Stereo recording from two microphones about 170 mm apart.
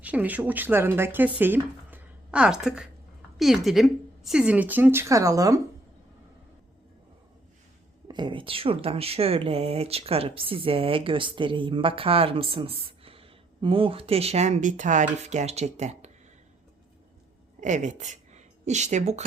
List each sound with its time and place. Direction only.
0.0 s a woman's voice: 10° right (ahead or behind)
8.0 s speech: 25° right (ahead or behind); by 16.0 s 40° right (ahead or behind)
17.6 s a woman's voice: 45° right (ahead or behind)